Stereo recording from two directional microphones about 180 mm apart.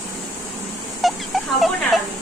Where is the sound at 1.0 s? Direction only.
Centre (ahead or behind).